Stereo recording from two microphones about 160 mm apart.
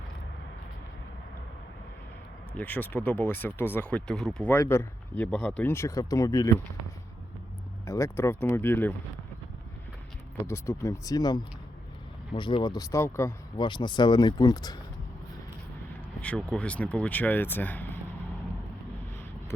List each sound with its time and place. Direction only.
2.6 s speech: 10° left (ahead or behind)
4.5 s speech: 15° left (ahead or behind)
5.7 s speech: 20° left (ahead or behind)
7.9 s speech: 20° left (ahead or behind)
10.4 s speech: 15° left (ahead or behind)
13.6 s speech: 30° left (ahead or behind)
16.2 s speech: 10° left (ahead or behind)